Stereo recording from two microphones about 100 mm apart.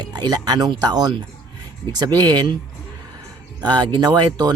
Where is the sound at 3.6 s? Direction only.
45° right (ahead or behind).